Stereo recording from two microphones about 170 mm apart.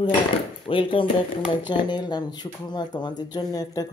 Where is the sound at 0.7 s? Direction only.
30° left (ahead or behind).